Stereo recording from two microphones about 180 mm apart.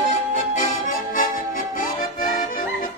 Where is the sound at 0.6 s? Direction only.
45° left (ahead or behind).